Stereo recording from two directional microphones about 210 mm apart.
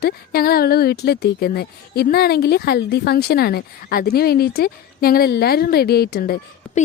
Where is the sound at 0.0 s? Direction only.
45° left (ahead or behind).